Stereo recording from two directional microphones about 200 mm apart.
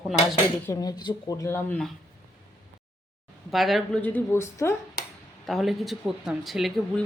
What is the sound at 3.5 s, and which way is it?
Speech, centre (ahead or behind).